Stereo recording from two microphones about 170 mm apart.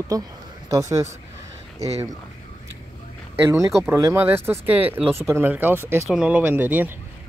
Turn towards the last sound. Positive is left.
turn(degrees=-10)  # may be behind; listen again after turning